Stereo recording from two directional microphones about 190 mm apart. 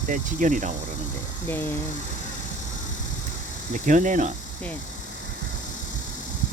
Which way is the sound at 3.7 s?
40° right (ahead or behind).